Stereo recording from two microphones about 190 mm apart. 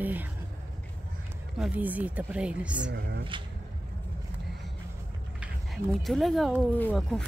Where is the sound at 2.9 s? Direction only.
60° right (ahead or behind).